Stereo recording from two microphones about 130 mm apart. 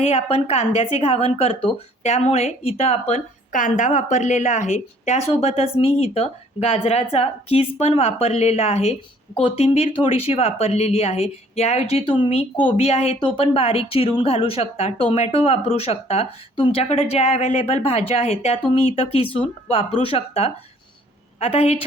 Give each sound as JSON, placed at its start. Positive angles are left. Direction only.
{"t": 0.0, "sound": "speech", "side_deg": 50}